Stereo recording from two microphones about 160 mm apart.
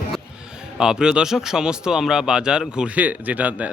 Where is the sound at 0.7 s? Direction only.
5° right (ahead or behind).